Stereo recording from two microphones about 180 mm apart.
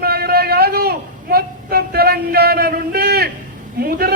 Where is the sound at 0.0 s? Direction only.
60° right (ahead or behind).